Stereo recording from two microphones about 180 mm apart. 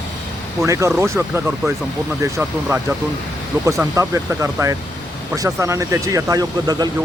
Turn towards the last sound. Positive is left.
turn(degrees=-20)  # may be behind; listen again after turning